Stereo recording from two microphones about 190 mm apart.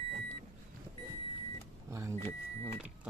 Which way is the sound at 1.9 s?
15° right (ahead or behind).